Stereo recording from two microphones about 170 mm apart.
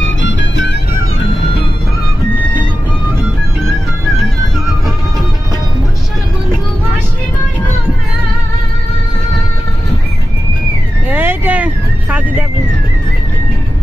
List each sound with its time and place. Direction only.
0.2 s music: 90° left
11.1 s music: 10° right (ahead or behind)